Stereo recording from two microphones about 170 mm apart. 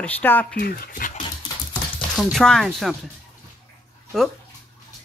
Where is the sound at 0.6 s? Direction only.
65° left (ahead or behind).